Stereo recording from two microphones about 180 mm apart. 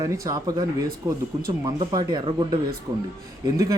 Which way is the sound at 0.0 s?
20° right (ahead or behind).